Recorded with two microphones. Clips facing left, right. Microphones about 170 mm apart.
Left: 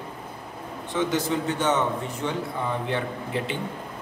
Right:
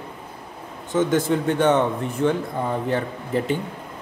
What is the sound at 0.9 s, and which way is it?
Speech, 50° right (ahead or behind).